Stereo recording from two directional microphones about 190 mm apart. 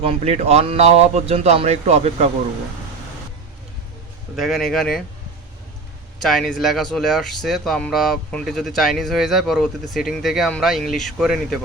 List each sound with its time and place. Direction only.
0.0 s speech: 30° right (ahead or behind)
4.4 s speech: centre (ahead or behind)
6.2 s speech: centre (ahead or behind)